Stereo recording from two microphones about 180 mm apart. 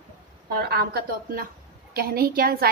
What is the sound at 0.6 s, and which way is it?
A woman's voice, 60° right (ahead or behind).